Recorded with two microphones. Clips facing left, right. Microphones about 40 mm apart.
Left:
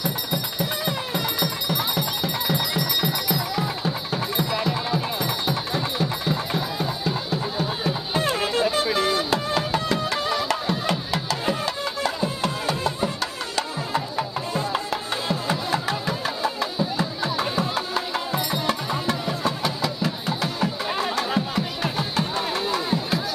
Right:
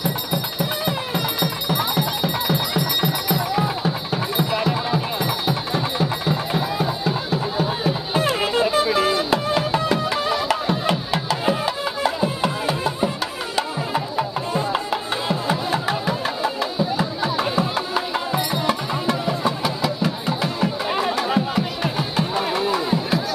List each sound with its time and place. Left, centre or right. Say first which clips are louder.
0.0 s music: right 3 dB; centre